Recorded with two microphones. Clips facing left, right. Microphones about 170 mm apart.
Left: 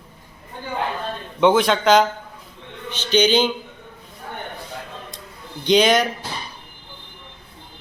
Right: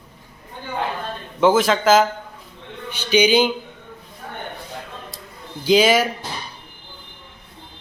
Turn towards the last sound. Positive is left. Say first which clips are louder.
# right 1 dB
turn(degrees=-5)  # may be behind; listen again after turning